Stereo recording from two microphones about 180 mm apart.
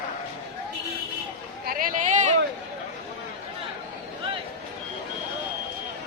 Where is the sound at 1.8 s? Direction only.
45° right (ahead or behind).